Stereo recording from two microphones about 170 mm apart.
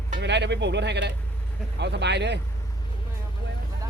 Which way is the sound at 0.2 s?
90° right.